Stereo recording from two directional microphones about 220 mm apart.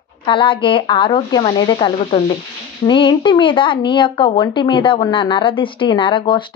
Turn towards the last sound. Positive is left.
turn(degrees=20)  # may be behind; listen again after turning